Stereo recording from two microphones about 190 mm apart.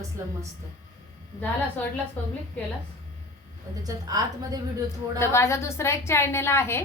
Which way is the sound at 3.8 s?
20° right (ahead or behind).